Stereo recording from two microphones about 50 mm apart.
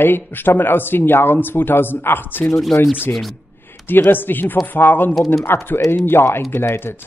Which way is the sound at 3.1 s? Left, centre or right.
Centre.